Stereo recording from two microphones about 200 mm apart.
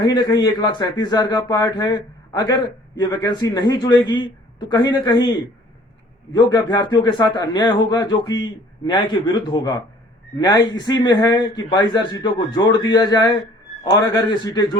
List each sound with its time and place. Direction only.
0.0 s a man's voice: 20° left (ahead or behind)
6.3 s a man's voice: 20° left (ahead or behind)